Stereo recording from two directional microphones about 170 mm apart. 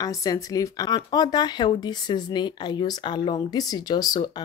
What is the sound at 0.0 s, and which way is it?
Speech, 20° left (ahead or behind).